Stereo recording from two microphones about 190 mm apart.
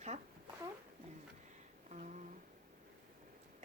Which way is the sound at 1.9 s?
40° right (ahead or behind).